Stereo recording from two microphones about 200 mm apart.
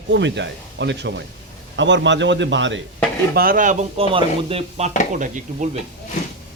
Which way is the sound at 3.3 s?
45° right (ahead or behind).